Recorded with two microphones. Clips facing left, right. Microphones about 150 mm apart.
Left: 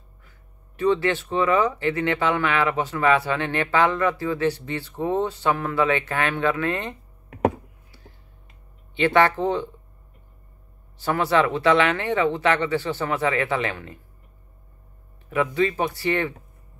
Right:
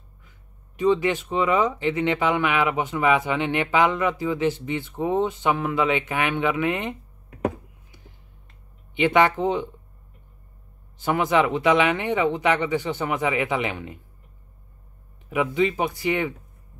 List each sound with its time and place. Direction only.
0.7 s speech: 15° right (ahead or behind)
8.9 s speech: 15° right (ahead or behind)
11.0 s speech: 15° right (ahead or behind)
15.2 s speech: 15° right (ahead or behind)